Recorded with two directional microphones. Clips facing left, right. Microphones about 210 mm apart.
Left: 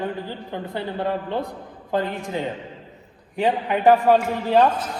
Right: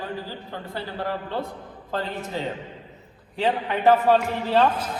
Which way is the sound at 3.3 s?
15° left (ahead or behind).